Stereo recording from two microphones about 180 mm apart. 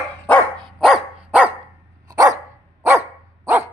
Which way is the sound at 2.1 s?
20° right (ahead or behind).